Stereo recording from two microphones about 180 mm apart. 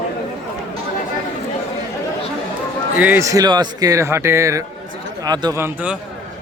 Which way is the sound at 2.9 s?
10° right (ahead or behind).